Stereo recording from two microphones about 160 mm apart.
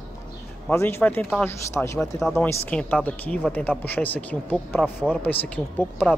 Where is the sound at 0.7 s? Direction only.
15° left (ahead or behind).